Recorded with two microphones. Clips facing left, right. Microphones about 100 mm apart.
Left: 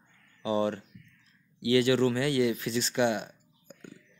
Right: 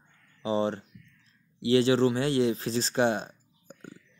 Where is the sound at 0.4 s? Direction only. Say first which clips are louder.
Right 1 dB; 30° right (ahead or behind).